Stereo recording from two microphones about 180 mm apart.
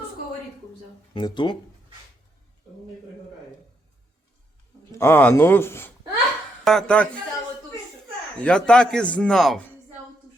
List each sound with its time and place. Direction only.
1.1 s speech: 25° left (ahead or behind)
4.9 s speech: 10° left (ahead or behind)
8.4 s speech: 5° left (ahead or behind)